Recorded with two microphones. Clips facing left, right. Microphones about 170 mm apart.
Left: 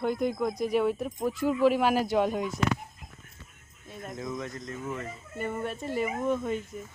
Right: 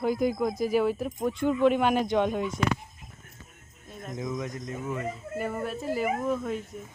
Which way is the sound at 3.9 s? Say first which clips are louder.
Even; centre (ahead or behind).